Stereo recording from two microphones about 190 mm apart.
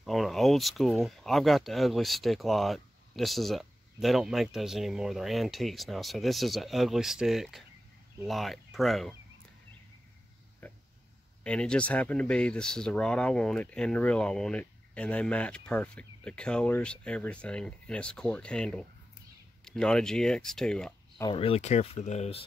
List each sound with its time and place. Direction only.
0.0 s speech: centre (ahead or behind)
10.6 s a sound: 5° left (ahead or behind)
11.4 s speech: 5° left (ahead or behind)
21.2 s speech: 25° left (ahead or behind)